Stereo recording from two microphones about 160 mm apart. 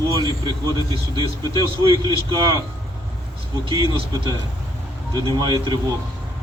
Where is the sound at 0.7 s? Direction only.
25° left (ahead or behind).